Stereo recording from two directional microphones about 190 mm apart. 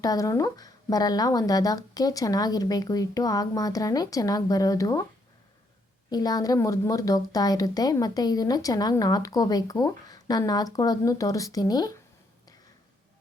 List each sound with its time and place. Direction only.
0.0 s a woman's voice: 20° left (ahead or behind)
6.1 s a woman's voice: 20° left (ahead or behind)